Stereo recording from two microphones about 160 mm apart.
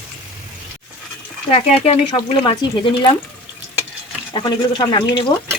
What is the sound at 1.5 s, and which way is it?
Speech, 40° left (ahead or behind).